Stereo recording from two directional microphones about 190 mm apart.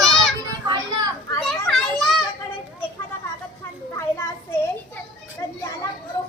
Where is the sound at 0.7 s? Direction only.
20° right (ahead or behind).